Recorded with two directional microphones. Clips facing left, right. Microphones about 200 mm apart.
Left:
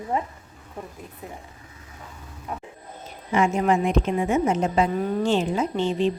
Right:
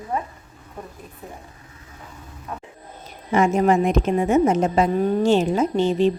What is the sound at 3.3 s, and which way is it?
Speech, 40° right (ahead or behind).